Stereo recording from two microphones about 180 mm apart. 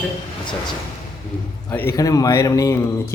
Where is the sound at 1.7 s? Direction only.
10° left (ahead or behind).